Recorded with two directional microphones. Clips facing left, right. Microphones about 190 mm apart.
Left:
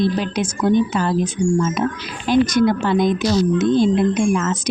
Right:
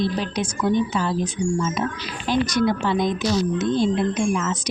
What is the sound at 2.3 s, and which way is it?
A woman's voice, 50° left (ahead or behind).